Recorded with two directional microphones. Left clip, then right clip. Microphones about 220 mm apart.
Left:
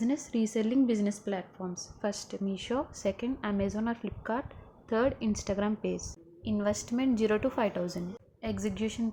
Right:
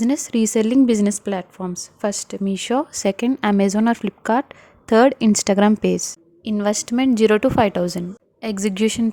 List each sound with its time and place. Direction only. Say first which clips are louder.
0.0 s a woman's voice: right 11 dB; 50° right (ahead or behind)